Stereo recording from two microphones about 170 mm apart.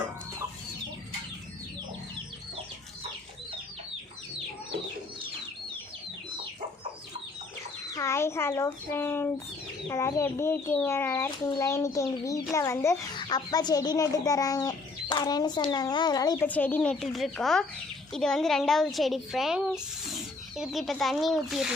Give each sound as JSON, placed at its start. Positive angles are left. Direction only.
{"t": 7.9, "sound": "speech", "side_deg": 15}
{"t": 16.5, "sound": "a woman's voice", "side_deg": 10}